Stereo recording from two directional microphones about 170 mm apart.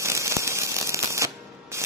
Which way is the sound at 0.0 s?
15° right (ahead or behind).